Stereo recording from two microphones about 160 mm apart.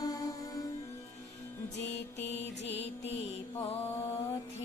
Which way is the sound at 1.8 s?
90° left.